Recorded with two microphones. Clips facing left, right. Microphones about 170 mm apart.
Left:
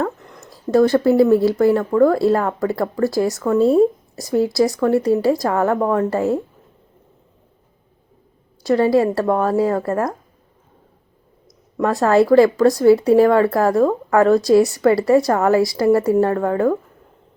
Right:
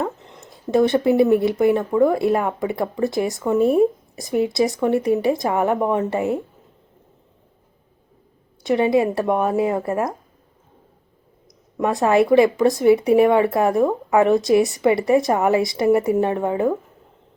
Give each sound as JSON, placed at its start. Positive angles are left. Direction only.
{"t": 0.0, "sound": "a sound", "side_deg": -20}
{"t": 0.5, "sound": "speech", "side_deg": -20}
{"t": 8.6, "sound": "speech", "side_deg": -20}
{"t": 11.8, "sound": "speech", "side_deg": -20}